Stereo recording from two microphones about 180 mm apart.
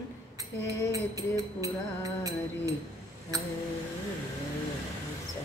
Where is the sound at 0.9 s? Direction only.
20° right (ahead or behind).